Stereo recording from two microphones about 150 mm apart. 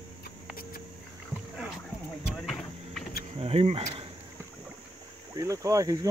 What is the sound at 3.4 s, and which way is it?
Speech, 40° right (ahead or behind).